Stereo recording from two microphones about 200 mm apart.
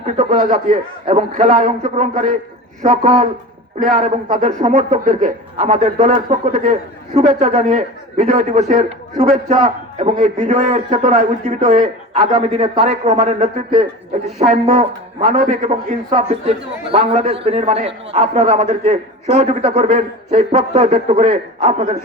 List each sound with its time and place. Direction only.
0.0 s a man's voice: 40° right (ahead or behind)
16.9 s a man's voice: 30° right (ahead or behind)